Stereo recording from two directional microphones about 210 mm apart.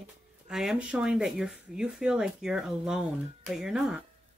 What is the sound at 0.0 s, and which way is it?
Speech, centre (ahead or behind).